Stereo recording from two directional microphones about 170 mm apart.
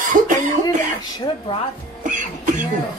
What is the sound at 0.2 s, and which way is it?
Cough, 45° right (ahead or behind).